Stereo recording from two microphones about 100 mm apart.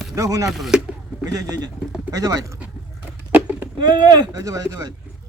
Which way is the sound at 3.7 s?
45° right (ahead or behind).